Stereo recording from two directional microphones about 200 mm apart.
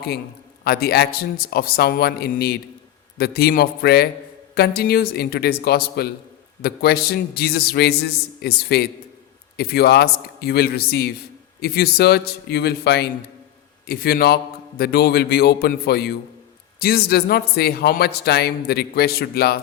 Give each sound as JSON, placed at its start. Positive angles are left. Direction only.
{"t": 0.6, "sound": "speech", "side_deg": 50}